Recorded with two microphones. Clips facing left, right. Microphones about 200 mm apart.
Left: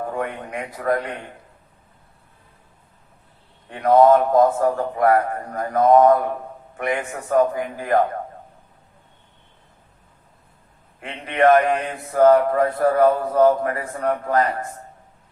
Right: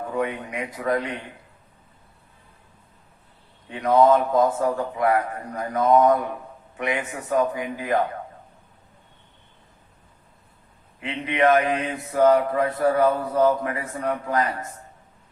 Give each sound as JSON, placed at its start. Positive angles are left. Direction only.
{"t": 0.2, "sound": "mantra", "side_deg": 50}
{"t": 3.7, "sound": "mantra", "side_deg": 55}
{"t": 11.0, "sound": "mantra", "side_deg": 50}